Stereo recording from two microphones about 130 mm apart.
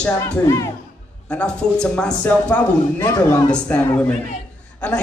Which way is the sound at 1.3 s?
5° left (ahead or behind).